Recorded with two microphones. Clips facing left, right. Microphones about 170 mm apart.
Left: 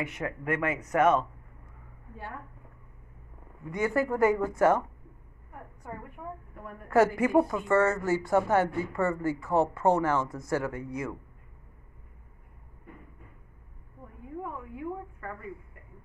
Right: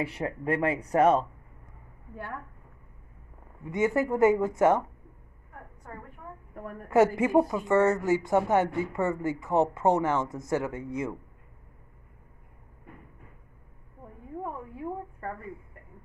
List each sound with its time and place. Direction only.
0.0 s speech: 30° right (ahead or behind)
3.7 s speech: 20° right (ahead or behind)
5.9 s a woman's voice: 10° left (ahead or behind)
6.5 s speech: 40° right (ahead or behind)
6.9 s speech: 20° right (ahead or behind)
14.4 s a sound: 35° right (ahead or behind)